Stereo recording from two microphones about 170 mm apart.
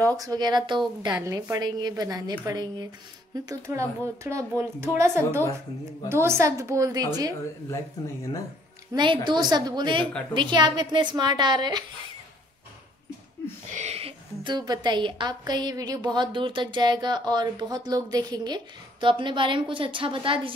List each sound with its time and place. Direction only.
0.0 s a woman's voice: 20° right (ahead or behind)
7.7 s speech: 20° left (ahead or behind)
8.9 s a woman's voice: 30° right (ahead or behind)
13.7 s a woman's voice: 40° right (ahead or behind)